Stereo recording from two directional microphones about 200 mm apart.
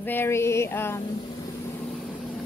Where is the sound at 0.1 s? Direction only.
10° left (ahead or behind).